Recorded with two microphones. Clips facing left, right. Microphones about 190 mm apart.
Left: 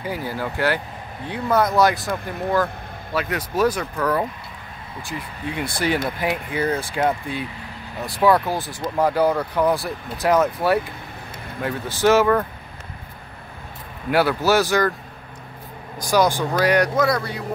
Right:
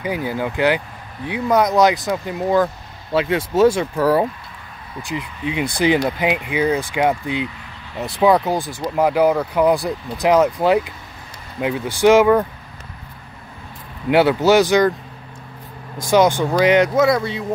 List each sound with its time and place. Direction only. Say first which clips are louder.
0.0 s speech: right 4 dB; 15° right (ahead or behind)
5.1 s speech: right 5 dB; 20° right (ahead or behind)
14.1 s speech: right 5 dB; 20° right (ahead or behind)
16.0 s speech: right 4 dB; 25° right (ahead or behind)